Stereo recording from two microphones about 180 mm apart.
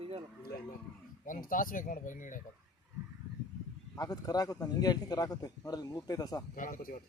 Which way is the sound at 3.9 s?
20° left (ahead or behind).